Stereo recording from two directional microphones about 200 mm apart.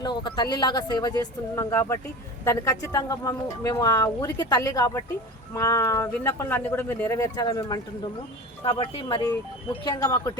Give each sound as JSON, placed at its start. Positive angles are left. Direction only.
{"t": 0.0, "sound": "speech", "side_deg": 20}